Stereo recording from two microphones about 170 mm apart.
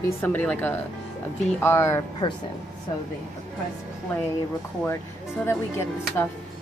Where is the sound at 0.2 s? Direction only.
10° left (ahead or behind).